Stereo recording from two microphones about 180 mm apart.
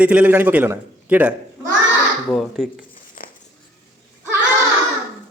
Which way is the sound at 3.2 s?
50° left (ahead or behind).